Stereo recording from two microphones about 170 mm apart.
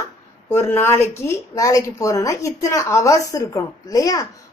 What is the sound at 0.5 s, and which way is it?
A woman's voice, 15° left (ahead or behind).